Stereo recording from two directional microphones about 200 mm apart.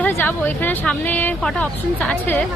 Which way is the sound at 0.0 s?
10° left (ahead or behind).